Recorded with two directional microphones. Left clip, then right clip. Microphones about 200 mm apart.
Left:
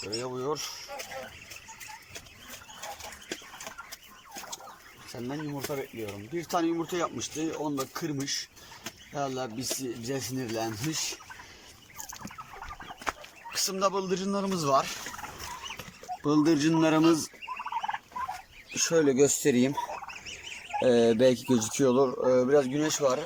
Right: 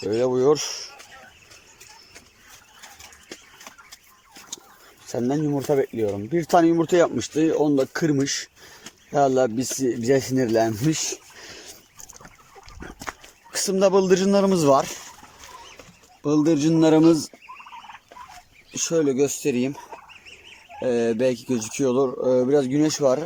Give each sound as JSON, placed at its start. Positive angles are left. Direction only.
{"t": 0.1, "sound": "speech", "side_deg": -50}
{"t": 5.3, "sound": "speech", "side_deg": -45}
{"t": 13.5, "sound": "a man's voice", "side_deg": -40}
{"t": 16.2, "sound": "speech", "side_deg": -15}
{"t": 18.8, "sound": "speech", "side_deg": -15}
{"t": 20.8, "sound": "speech", "side_deg": -10}